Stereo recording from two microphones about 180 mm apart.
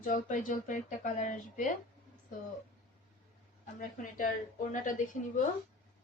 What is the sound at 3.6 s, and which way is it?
Speech, 45° left (ahead or behind).